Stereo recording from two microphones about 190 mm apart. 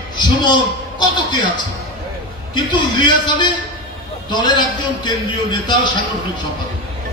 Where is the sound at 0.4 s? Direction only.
20° left (ahead or behind).